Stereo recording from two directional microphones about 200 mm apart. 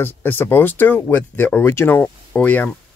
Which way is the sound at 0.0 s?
10° left (ahead or behind).